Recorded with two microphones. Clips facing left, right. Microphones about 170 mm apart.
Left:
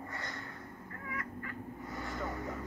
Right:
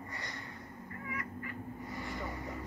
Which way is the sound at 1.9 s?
Centre (ahead or behind).